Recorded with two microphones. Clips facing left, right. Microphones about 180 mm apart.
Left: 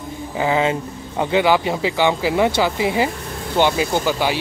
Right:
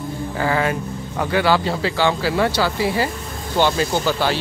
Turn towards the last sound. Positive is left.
turn(degrees=15)  # may be behind; listen again after turning